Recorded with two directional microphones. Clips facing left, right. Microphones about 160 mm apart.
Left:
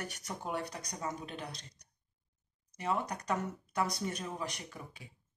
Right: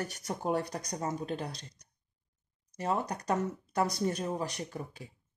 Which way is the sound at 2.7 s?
35° right (ahead or behind).